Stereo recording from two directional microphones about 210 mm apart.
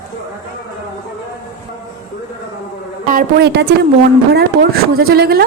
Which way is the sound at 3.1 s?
50° right (ahead or behind).